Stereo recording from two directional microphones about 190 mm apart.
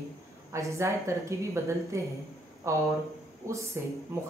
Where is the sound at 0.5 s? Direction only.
15° right (ahead or behind).